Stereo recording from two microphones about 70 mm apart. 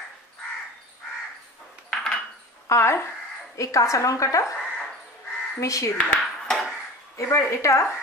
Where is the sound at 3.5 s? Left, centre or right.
Left.